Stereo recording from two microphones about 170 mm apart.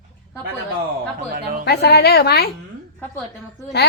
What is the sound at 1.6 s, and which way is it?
Speech, 75° left (ahead or behind).